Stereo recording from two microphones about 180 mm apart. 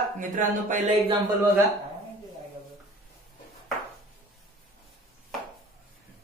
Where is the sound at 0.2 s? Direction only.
45° right (ahead or behind).